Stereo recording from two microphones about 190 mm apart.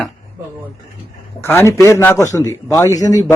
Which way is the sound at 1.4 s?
10° left (ahead or behind).